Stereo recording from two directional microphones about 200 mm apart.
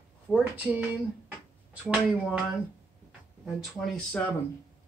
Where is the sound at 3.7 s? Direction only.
5° left (ahead or behind).